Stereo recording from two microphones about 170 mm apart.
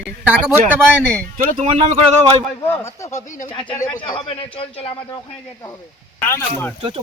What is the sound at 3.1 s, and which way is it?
Speech, 45° left (ahead or behind).